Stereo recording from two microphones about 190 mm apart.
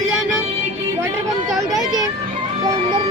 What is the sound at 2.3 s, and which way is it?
Music, 35° right (ahead or behind).